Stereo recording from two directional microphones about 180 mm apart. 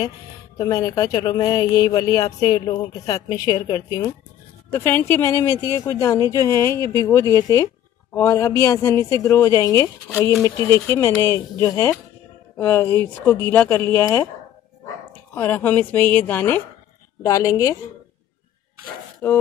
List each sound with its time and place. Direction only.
0.6 s speech: 20° left (ahead or behind)
15.3 s speech: 10° left (ahead or behind)
19.2 s speech: 10° left (ahead or behind)